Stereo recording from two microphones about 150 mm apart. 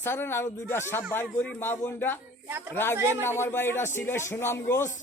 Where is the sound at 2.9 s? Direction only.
15° right (ahead or behind).